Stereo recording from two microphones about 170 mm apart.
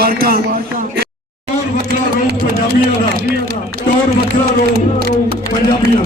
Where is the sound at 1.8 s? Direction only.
75° right (ahead or behind).